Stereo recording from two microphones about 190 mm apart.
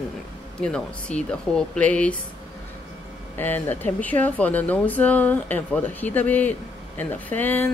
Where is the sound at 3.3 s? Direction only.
10° left (ahead or behind).